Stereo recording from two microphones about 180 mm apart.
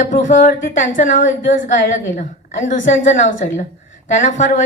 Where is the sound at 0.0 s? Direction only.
45° left (ahead or behind).